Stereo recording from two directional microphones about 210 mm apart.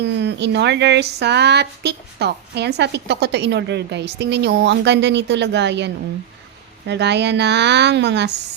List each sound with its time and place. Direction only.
0.0 s speech: 55° right (ahead or behind)